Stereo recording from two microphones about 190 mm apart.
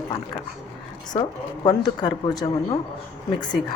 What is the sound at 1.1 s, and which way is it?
A woman's voice, 20° left (ahead or behind).